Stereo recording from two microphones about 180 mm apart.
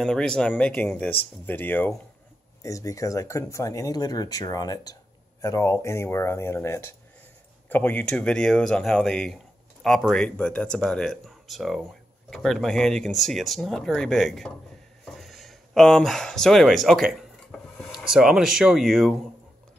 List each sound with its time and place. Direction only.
0.0 s speech: 5° left (ahead or behind)
15.0 s a sound: centre (ahead or behind)
18.0 s speech: 5° right (ahead or behind)